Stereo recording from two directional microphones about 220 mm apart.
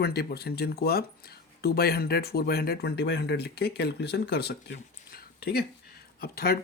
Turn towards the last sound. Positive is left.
turn(degrees=45)  # may be behind; listen again after turning